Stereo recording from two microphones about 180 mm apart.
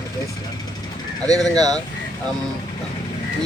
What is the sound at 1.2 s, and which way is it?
Speech, 20° right (ahead or behind).